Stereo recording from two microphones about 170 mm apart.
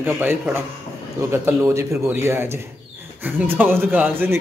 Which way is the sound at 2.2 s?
15° right (ahead or behind).